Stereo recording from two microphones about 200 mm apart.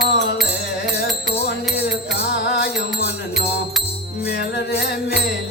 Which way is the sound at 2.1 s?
55° left (ahead or behind).